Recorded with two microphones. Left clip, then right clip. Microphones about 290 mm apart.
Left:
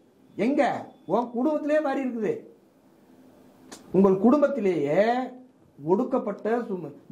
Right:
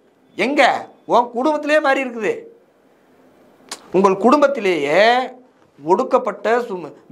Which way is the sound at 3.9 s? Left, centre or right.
Centre.